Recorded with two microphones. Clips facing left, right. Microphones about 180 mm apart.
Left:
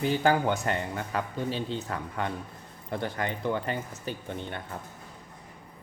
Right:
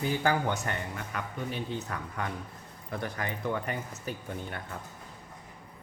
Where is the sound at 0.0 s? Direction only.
30° left (ahead or behind).